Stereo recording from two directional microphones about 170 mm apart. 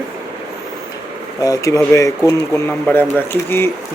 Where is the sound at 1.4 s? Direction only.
20° left (ahead or behind).